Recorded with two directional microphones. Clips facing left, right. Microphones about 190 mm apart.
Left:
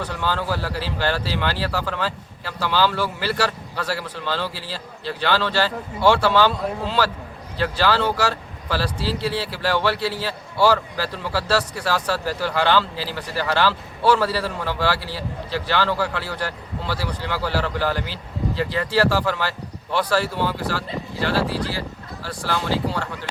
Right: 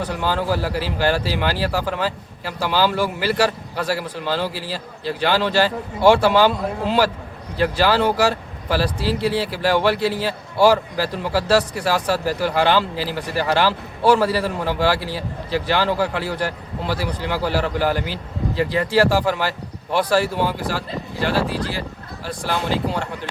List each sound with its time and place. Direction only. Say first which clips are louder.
0.0 s speech: right 3 dB; 15° right (ahead or behind)